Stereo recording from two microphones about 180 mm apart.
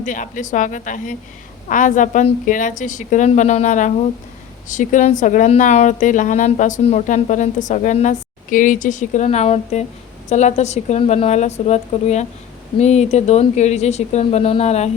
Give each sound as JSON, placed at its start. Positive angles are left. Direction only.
{"t": 0.0, "sound": "a woman's voice", "side_deg": 45}